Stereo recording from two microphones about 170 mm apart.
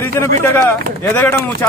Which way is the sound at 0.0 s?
15° left (ahead or behind).